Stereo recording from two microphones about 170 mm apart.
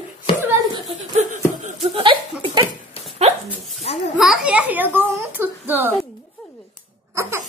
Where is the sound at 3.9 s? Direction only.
40° left (ahead or behind).